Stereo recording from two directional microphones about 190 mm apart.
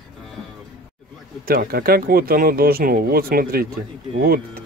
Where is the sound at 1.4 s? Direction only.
50° right (ahead or behind).